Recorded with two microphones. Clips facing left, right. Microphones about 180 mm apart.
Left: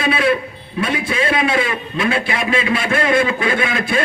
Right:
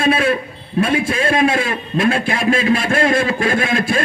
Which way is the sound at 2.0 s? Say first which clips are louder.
Right 3 dB; 50° right (ahead or behind).